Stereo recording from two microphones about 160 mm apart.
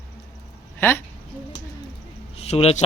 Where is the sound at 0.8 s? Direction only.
15° left (ahead or behind).